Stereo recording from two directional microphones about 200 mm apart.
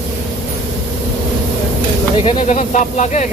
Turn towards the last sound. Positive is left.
turn(degrees=35)  # may be behind; listen again after turning